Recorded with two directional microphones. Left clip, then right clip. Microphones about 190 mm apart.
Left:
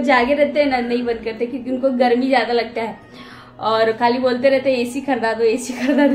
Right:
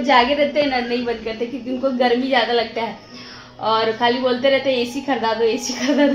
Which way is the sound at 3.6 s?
20° left (ahead or behind).